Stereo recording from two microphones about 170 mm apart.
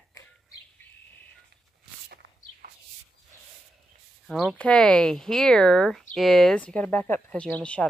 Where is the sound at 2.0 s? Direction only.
70° right (ahead or behind).